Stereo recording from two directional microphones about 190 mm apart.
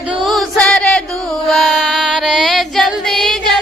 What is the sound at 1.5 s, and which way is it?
Female singing, centre (ahead or behind).